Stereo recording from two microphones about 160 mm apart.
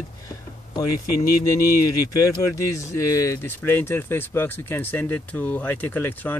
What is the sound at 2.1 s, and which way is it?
Speech, 20° left (ahead or behind).